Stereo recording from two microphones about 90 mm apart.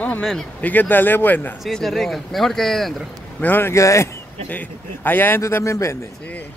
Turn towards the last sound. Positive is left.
turn(degrees=35)  # may be behind; listen again after turning